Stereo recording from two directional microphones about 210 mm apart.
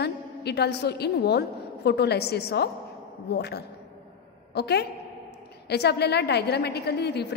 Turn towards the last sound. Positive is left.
turn(degrees=50)  # may be behind; listen again after turning